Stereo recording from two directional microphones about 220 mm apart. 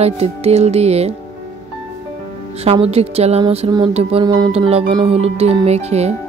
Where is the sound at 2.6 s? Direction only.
25° right (ahead or behind).